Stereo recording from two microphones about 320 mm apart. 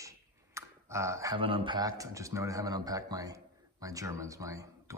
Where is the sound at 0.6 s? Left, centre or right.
Centre.